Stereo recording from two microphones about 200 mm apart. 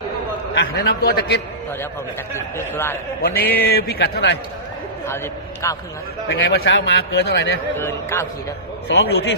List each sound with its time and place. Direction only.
0.5 s speech: 55° left (ahead or behind)
2.3 s a man's voice: 10° left (ahead or behind)
3.3 s speech: 45° left (ahead or behind)
5.0 s a man's voice: 15° left (ahead or behind)
6.2 s a man's voice: 60° left (ahead or behind)
7.8 s a man's voice: 10° left (ahead or behind)
8.9 s a man's voice: 55° left (ahead or behind)